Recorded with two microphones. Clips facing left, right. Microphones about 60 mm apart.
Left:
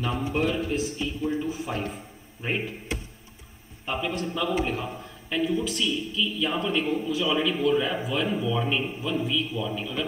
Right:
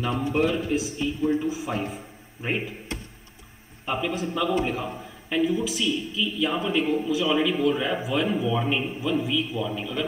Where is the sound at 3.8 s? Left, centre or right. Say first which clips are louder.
Right 2 dB; centre.